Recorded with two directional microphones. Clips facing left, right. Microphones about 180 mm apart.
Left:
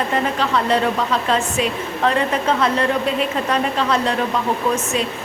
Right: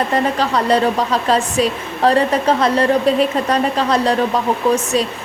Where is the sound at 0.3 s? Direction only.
40° right (ahead or behind).